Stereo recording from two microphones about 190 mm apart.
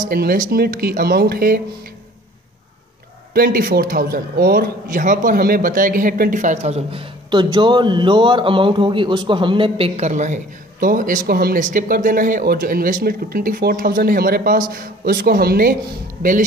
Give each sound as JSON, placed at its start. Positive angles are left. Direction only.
{"t": 0.0, "sound": "a man's voice", "side_deg": -50}
{"t": 3.3, "sound": "a man's voice", "side_deg": -50}